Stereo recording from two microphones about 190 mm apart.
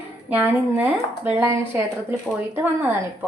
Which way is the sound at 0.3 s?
10° right (ahead or behind).